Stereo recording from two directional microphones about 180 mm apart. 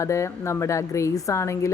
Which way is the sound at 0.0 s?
15° left (ahead or behind).